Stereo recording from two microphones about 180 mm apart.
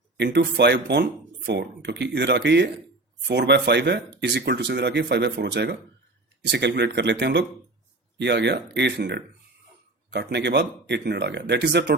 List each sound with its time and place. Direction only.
0.2 s speech: 70° right (ahead or behind)